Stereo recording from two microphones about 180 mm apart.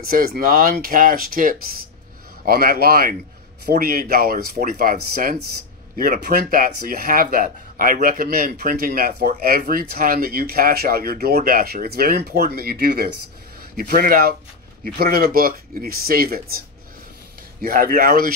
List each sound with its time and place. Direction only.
0.1 s speech: 55° right (ahead or behind)